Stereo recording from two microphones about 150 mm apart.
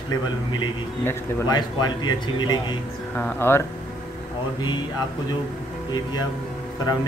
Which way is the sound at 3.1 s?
15° left (ahead or behind).